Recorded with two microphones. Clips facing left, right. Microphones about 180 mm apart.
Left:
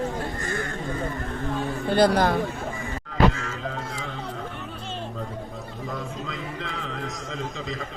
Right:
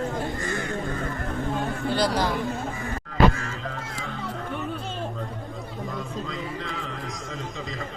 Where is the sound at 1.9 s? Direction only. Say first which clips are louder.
Left 6 dB; 55° left (ahead or behind).